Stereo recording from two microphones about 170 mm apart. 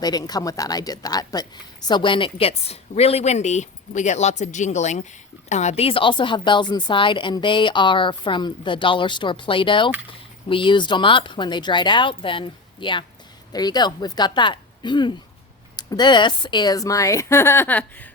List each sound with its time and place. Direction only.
0.0 s a woman's voice: 25° left (ahead or behind)